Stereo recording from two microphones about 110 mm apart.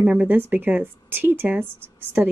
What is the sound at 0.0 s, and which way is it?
Speech, 15° right (ahead or behind).